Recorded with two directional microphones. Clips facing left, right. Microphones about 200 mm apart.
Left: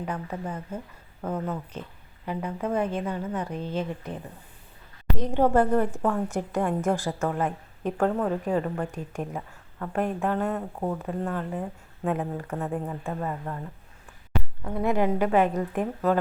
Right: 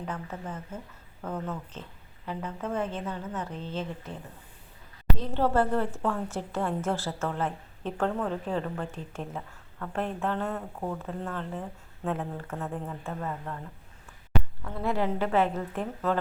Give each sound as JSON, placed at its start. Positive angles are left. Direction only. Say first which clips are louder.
{"t": 0.0, "sound": "a woman's voice", "louder": "left 4 dB", "side_deg": 10}
{"t": 10.8, "sound": "speech", "louder": "left 4 dB", "side_deg": 25}
{"t": 11.2, "sound": "a woman's voice", "louder": "left 5 dB", "side_deg": 10}
{"t": 14.6, "sound": "a woman's voice", "louder": "left 6 dB", "side_deg": 15}